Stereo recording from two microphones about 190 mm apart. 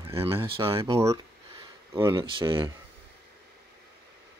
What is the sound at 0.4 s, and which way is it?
Speech, 25° right (ahead or behind).